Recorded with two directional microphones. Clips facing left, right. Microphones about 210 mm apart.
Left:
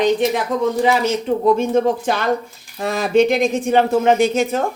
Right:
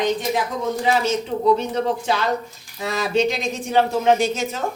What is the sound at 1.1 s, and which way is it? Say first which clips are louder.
A woman's voice: left 3 dB; 55° left (ahead or behind).